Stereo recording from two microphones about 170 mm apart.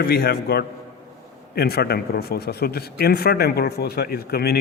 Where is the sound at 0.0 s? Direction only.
65° left (ahead or behind).